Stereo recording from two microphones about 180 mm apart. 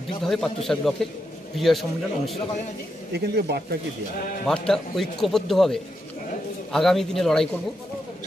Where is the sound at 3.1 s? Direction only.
65° right (ahead or behind).